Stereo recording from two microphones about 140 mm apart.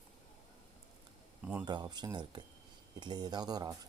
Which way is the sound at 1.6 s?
30° right (ahead or behind).